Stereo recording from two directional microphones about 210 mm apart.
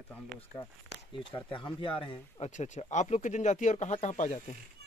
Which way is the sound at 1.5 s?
25° left (ahead or behind).